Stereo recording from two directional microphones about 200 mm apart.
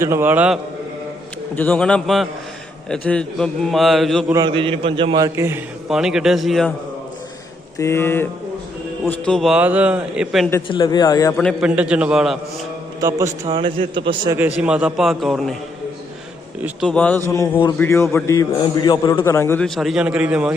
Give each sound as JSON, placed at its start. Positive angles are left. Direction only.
{"t": 0.0, "sound": "a man's voice", "side_deg": -10}
{"t": 1.5, "sound": "a man's voice", "side_deg": 10}
{"t": 4.3, "sound": "a man's voice", "side_deg": -20}
{"t": 7.8, "sound": "a man's voice", "side_deg": 15}
{"t": 10.7, "sound": "a man's voice", "side_deg": 25}
{"t": 11.3, "sound": "a man's voice", "side_deg": 0}
{"t": 13.0, "sound": "a man's voice", "side_deg": -15}
{"t": 13.4, "sound": "a man's voice", "side_deg": -25}
{"t": 14.3, "sound": "a man's voice", "side_deg": -5}
{"t": 16.6, "sound": "a man's voice", "side_deg": 5}